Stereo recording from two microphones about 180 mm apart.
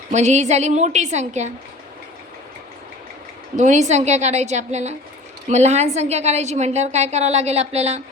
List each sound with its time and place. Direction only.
0.1 s a woman's voice: 40° right (ahead or behind)
3.5 s a woman's voice: 45° right (ahead or behind)